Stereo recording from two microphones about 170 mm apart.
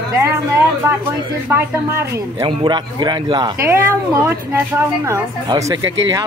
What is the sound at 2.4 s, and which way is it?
Speech, 25° right (ahead or behind).